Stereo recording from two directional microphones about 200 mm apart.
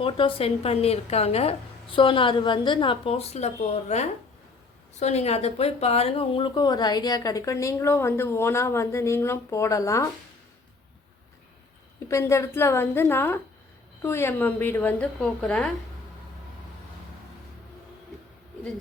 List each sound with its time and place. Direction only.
0.0 s a woman's voice: 25° left (ahead or behind)
12.0 s speech: 15° left (ahead or behind)